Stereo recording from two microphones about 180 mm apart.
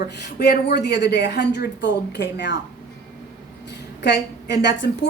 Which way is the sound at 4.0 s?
65° left (ahead or behind).